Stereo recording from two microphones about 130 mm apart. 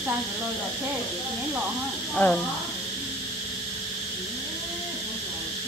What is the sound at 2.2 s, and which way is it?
Speech, 15° left (ahead or behind).